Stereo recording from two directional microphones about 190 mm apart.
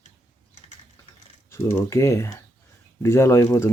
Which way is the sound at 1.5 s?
15° left (ahead or behind).